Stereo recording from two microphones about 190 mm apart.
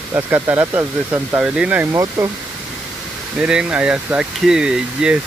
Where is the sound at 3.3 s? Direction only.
5° right (ahead or behind).